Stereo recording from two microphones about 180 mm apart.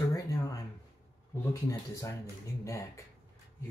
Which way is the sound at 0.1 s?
20° left (ahead or behind).